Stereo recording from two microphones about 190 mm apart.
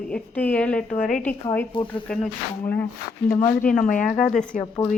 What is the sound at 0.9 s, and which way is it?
Speech, 45° left (ahead or behind).